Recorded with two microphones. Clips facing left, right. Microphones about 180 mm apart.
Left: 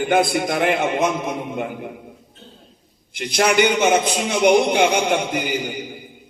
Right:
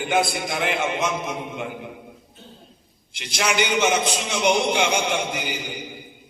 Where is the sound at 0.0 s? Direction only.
50° left (ahead or behind).